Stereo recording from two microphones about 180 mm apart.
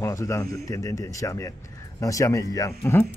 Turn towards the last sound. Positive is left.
turn(degrees=10)  # may be behind; listen again after turning